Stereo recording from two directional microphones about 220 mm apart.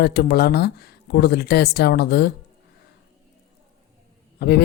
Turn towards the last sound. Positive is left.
turn(degrees=45)  # may be behind; listen again after turning